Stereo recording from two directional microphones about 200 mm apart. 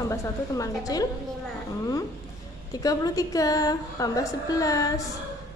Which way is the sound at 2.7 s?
20° left (ahead or behind).